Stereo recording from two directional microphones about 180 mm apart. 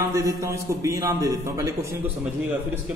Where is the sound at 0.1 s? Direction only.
20° right (ahead or behind).